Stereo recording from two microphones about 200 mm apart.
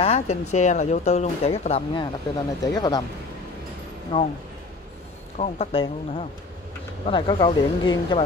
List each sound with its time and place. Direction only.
0.0 s a woman's voice: 30° left (ahead or behind)
2.6 s speech: 20° left (ahead or behind)
4.1 s speech: 20° left (ahead or behind)
5.4 s speech: 30° left (ahead or behind)